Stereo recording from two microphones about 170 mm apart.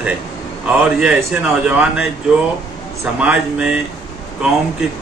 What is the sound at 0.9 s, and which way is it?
A man's voice, 5° right (ahead or behind).